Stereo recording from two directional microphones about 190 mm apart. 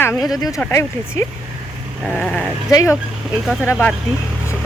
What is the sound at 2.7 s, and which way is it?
Speech, 15° left (ahead or behind).